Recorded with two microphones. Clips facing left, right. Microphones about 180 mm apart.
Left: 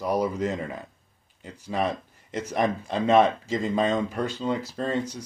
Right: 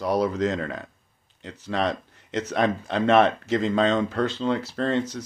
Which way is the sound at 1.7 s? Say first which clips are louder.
Right 1 dB; 80° right.